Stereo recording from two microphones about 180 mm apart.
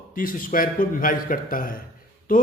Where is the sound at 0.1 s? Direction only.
50° left (ahead or behind).